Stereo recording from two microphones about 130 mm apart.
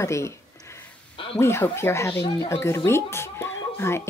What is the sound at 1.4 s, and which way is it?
Speech, 20° left (ahead or behind).